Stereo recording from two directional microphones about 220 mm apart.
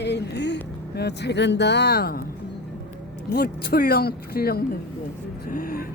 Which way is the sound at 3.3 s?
45° left (ahead or behind).